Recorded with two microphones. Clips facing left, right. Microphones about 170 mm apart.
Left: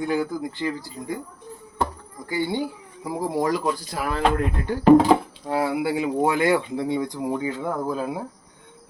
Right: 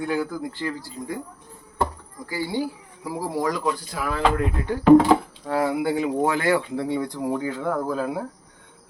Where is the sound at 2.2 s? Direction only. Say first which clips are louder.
Left 1 dB; 25° left (ahead or behind).